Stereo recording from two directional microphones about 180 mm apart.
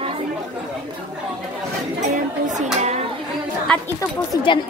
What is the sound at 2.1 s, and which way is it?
Speech, 45° right (ahead or behind).